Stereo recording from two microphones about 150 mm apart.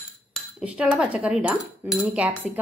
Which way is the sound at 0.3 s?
10° right (ahead or behind).